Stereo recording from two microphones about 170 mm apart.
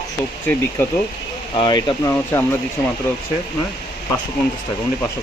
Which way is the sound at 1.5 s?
25° left (ahead or behind).